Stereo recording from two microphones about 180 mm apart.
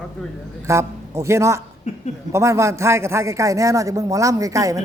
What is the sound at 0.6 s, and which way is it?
A man's voice, 15° right (ahead or behind).